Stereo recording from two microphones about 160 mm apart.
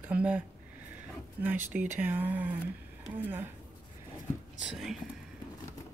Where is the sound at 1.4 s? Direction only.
10° right (ahead or behind).